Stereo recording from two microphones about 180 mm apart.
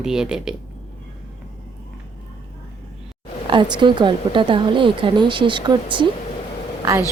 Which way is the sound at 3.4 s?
25° right (ahead or behind).